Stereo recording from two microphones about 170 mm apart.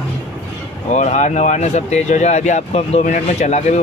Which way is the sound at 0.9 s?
45° left (ahead or behind).